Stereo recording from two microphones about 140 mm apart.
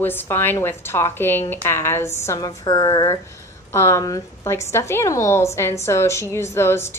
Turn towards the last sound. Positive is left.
turn(degrees=20)  # may be behind; listen again after turning